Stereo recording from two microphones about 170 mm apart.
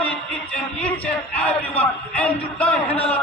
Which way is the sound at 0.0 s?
5° left (ahead or behind).